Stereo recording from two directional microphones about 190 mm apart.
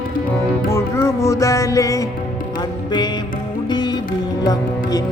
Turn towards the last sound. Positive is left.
turn(degrees=20)  # may be behind; listen again after turning